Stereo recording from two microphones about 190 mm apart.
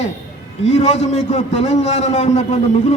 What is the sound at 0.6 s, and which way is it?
A man's voice, 35° left (ahead or behind).